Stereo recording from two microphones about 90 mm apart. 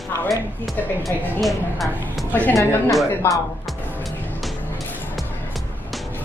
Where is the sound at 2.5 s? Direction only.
35° left (ahead or behind).